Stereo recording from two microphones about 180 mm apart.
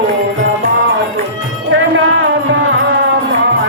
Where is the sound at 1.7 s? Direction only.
90° right.